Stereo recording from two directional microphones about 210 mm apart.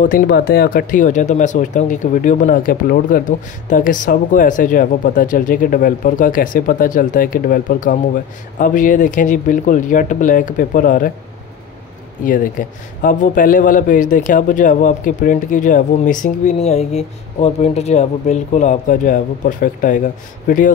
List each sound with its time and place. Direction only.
0.0 s speech: 45° left (ahead or behind)
12.3 s speech: 40° left (ahead or behind)